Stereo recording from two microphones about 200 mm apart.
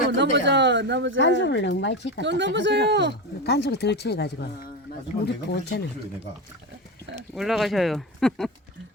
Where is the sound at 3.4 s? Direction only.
55° left (ahead or behind).